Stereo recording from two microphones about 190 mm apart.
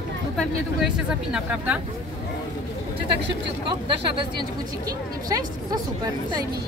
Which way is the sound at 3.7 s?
25° right (ahead or behind).